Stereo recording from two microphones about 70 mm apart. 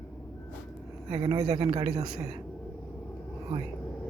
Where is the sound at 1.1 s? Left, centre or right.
Right.